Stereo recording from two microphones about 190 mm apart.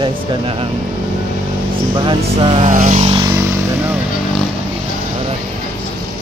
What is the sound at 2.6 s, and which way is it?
Vehicle, 40° right (ahead or behind).